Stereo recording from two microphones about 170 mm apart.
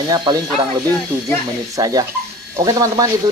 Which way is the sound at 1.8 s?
20° right (ahead or behind).